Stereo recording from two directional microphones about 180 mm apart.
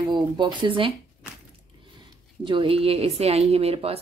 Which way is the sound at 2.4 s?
30° right (ahead or behind).